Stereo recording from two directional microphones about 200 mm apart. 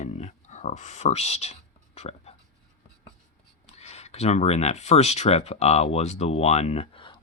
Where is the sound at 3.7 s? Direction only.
30° left (ahead or behind).